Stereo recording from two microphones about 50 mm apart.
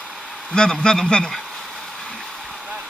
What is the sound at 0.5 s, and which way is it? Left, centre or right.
Speech, centre.